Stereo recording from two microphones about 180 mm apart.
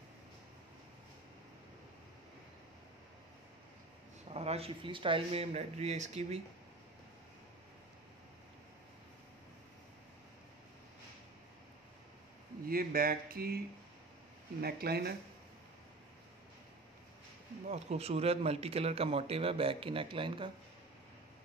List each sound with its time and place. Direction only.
4.3 s a man's voice: 35° right (ahead or behind)
12.6 s speech: 55° right (ahead or behind)
14.6 s speech: 60° right (ahead or behind)
17.6 s a man's voice: 40° right (ahead or behind)